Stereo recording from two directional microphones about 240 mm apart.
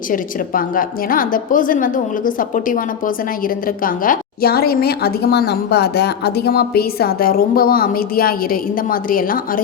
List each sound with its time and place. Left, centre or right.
0.1 s a woman's voice: left